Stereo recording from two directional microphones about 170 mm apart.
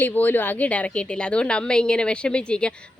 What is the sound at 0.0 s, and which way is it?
A woman's voice, 10° left (ahead or behind).